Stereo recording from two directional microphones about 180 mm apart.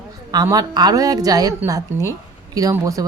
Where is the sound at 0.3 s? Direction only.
20° right (ahead or behind).